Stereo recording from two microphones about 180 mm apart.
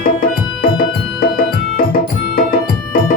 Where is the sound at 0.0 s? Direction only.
55° left (ahead or behind).